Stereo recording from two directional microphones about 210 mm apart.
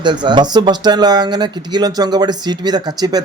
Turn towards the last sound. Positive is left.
turn(degrees=-20)  # may be behind; listen again after turning